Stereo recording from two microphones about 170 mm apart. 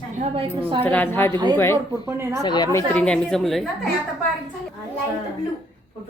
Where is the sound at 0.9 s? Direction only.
10° left (ahead or behind).